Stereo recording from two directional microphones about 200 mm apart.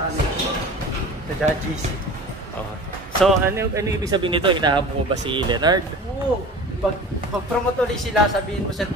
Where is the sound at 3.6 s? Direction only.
15° right (ahead or behind).